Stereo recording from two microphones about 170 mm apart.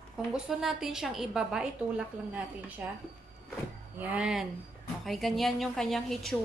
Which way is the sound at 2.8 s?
10° right (ahead or behind).